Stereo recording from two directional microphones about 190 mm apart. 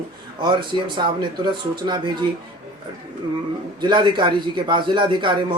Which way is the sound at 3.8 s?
25° right (ahead or behind).